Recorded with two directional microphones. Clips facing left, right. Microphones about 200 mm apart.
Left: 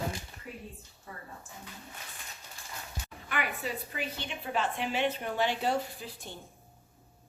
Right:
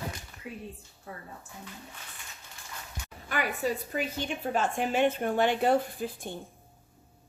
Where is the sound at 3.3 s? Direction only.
40° right (ahead or behind).